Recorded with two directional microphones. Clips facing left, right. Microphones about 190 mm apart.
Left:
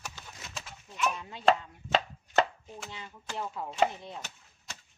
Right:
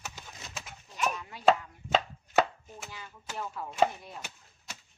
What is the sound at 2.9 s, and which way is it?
Speech, 25° left (ahead or behind).